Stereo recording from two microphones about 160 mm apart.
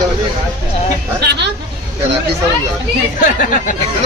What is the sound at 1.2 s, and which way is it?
Speech, 90° right.